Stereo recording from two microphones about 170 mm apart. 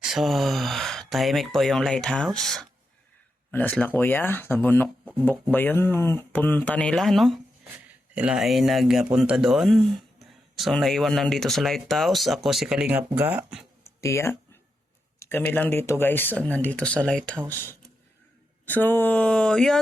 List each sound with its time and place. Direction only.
0.0 s speech: centre (ahead or behind)
14.0 s speech: 15° left (ahead or behind)
18.6 s speech: 10° left (ahead or behind)